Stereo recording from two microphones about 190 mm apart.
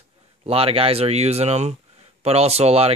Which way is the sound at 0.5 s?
30° right (ahead or behind).